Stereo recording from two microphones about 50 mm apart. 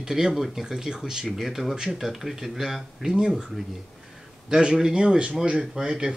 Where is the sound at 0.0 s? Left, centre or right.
Centre.